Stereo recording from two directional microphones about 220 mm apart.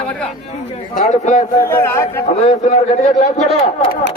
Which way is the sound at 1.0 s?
35° left (ahead or behind).